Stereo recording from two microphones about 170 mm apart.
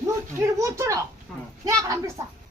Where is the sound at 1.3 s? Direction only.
5° left (ahead or behind).